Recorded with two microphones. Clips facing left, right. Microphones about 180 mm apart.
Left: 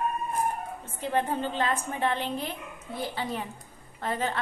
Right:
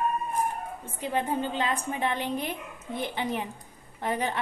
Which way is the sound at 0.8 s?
15° right (ahead or behind).